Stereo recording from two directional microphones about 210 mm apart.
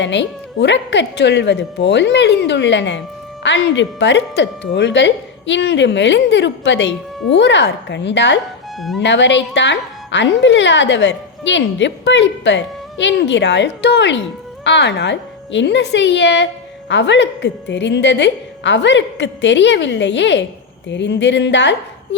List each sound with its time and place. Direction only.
0.0 s speech: 60° left (ahead or behind)